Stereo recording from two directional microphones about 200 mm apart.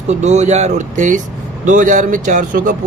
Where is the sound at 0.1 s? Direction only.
35° right (ahead or behind).